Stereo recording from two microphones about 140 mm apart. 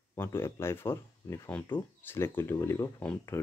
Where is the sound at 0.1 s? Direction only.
15° left (ahead or behind).